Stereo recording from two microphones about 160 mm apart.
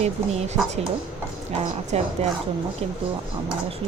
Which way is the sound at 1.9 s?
45° right (ahead or behind).